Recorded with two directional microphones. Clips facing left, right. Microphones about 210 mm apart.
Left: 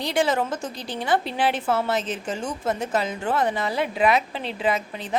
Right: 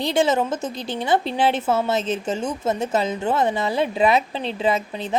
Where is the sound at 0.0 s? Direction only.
25° right (ahead or behind).